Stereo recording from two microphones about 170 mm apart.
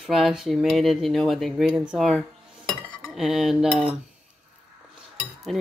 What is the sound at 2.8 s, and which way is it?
Cutlery, centre (ahead or behind).